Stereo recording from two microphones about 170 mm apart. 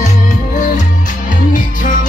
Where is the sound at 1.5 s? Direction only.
50° left (ahead or behind).